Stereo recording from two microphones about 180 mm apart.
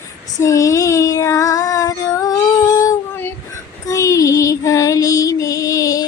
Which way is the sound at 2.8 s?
15° left (ahead or behind).